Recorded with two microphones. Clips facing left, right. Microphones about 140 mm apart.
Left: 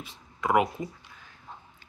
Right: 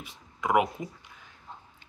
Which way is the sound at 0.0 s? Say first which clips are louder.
Left 1 dB; 15° right (ahead or behind).